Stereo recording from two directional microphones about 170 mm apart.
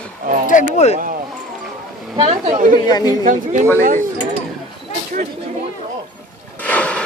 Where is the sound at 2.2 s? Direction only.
40° right (ahead or behind).